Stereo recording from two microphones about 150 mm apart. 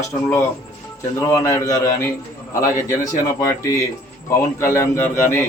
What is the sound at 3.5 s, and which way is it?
A man's voice, 20° left (ahead or behind).